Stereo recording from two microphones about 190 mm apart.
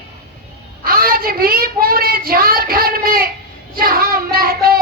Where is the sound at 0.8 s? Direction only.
50° right (ahead or behind).